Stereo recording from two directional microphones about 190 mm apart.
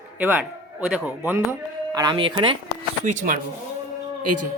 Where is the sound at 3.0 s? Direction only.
40° right (ahead or behind).